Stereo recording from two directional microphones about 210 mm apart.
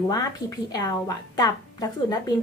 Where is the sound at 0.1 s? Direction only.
15° left (ahead or behind).